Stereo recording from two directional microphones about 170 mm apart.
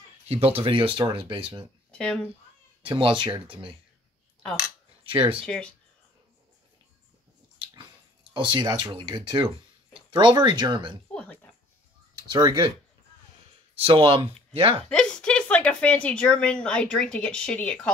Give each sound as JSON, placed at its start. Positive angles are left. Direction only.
{"t": 0.3, "sound": "speech", "side_deg": -35}
{"t": 1.9, "sound": "speech", "side_deg": 5}
{"t": 2.8, "sound": "speech", "side_deg": -30}
{"t": 5.4, "sound": "a woman's voice", "side_deg": 5}
{"t": 7.5, "sound": "speech", "side_deg": -25}
{"t": 11.1, "sound": "a sound", "side_deg": 5}
{"t": 12.3, "sound": "speech", "side_deg": -25}
{"t": 13.7, "sound": "speech", "side_deg": -30}
{"t": 15.0, "sound": "a woman's voice", "side_deg": 5}